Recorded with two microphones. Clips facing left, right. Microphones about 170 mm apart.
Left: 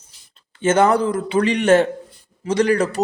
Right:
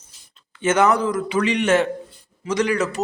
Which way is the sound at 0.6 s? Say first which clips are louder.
Left 2 dB; 30° left (ahead or behind).